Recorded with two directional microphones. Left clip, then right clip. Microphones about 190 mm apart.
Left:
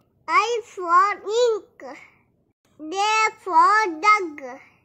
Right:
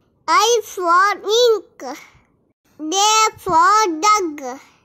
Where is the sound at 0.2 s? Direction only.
35° right (ahead or behind).